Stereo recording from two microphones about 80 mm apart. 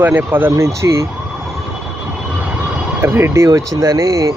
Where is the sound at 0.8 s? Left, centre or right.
Right.